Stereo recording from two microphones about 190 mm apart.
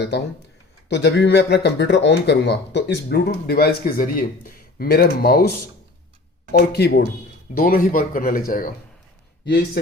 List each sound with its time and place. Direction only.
0.9 s speech: 65° left (ahead or behind)
6.5 s speech: 55° left (ahead or behind)